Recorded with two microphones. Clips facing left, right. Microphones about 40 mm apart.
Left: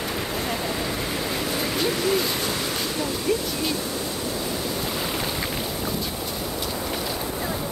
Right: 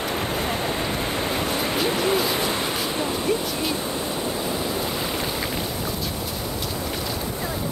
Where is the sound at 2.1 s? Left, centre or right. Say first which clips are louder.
Right 2 dB; centre.